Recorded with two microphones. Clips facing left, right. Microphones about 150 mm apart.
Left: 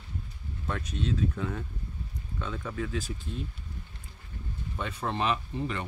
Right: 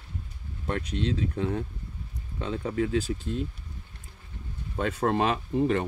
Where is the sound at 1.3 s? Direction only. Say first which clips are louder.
Right 5 dB; 35° right (ahead or behind).